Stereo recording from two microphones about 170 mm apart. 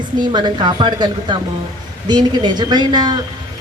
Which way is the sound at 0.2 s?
25° right (ahead or behind).